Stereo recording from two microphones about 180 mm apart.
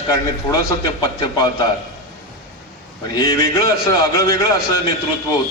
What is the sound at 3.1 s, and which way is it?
A man's voice, 20° left (ahead or behind).